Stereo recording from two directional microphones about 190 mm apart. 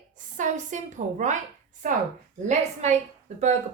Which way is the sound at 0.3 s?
40° right (ahead or behind).